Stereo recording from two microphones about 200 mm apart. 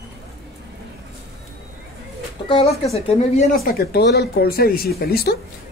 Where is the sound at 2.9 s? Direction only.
30° left (ahead or behind).